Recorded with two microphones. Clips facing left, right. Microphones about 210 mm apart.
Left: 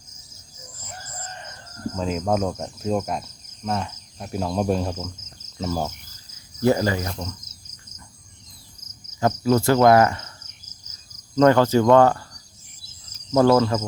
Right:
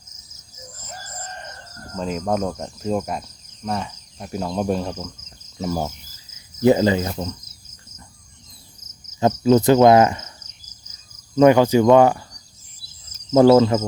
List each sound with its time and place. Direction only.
2.0 s cricket: centre (ahead or behind)
5.5 s speech: 10° right (ahead or behind)
6.6 s cricket: 20° right (ahead or behind)
9.2 s cricket: 20° right (ahead or behind)
11.3 s speech: 15° right (ahead or behind)
13.6 s cricket: 20° right (ahead or behind)